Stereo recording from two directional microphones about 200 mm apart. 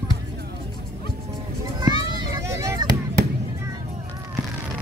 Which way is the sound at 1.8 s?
20° right (ahead or behind).